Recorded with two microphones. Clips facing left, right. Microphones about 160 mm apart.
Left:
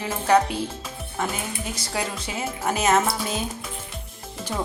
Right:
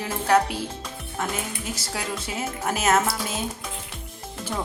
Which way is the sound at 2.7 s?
5° right (ahead or behind).